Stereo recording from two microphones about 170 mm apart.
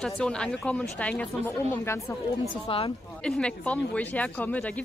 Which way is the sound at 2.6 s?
35° left (ahead or behind).